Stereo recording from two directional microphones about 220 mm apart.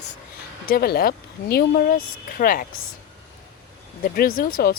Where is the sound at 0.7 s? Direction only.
45° left (ahead or behind).